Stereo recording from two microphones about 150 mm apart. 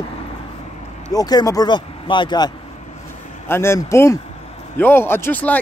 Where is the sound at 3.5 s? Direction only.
15° left (ahead or behind).